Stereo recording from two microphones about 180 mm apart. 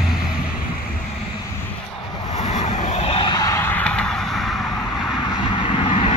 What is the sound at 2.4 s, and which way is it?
Vehicle, 40° left (ahead or behind).